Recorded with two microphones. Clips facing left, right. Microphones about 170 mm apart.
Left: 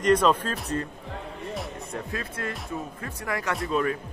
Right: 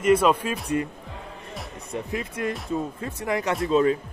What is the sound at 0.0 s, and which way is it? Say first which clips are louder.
Speech: right 2 dB; 10° right (ahead or behind).